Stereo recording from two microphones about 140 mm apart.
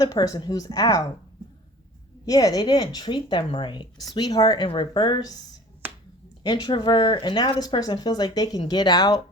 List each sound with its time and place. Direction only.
0.0 s speech: 25° left (ahead or behind)
2.2 s speech: 25° left (ahead or behind)
6.4 s speech: 30° left (ahead or behind)